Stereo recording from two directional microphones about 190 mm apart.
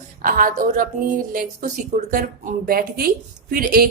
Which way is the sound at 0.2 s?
45° right (ahead or behind).